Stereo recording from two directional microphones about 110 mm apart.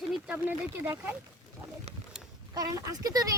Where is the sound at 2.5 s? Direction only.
35° right (ahead or behind).